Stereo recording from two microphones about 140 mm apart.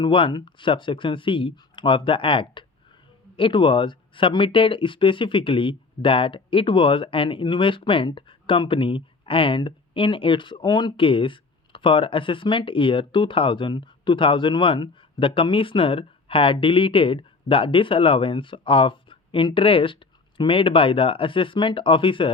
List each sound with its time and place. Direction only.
0.0 s speech: 35° left (ahead or behind)